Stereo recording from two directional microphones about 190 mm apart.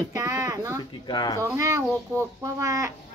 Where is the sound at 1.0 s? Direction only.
25° left (ahead or behind).